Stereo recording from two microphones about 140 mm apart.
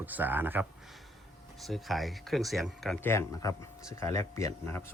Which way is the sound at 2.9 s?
20° left (ahead or behind).